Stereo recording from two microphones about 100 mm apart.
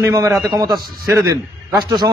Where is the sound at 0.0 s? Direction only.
30° right (ahead or behind).